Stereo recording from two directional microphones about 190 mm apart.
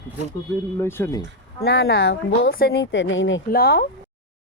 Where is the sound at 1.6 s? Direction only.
55° left (ahead or behind); by 3.4 s 80° left.